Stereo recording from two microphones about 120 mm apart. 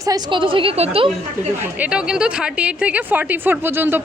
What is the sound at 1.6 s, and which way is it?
A woman's voice, 10° right (ahead or behind).